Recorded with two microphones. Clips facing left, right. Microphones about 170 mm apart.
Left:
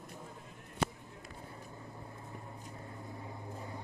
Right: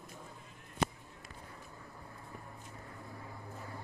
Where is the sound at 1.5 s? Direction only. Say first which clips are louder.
Left 3 dB; 25° left (ahead or behind).